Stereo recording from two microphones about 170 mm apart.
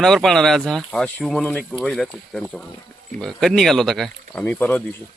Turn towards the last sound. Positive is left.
turn(degrees=10)  # may be behind; listen again after turning